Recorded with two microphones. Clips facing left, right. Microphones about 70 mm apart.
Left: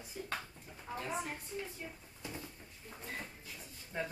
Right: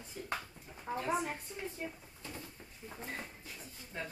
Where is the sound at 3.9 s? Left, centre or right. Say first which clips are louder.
Left 3 dB; centre.